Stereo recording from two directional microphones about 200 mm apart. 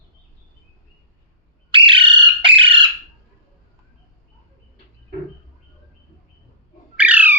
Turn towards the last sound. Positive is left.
turn(degrees=-10)  # may be behind; listen again after turning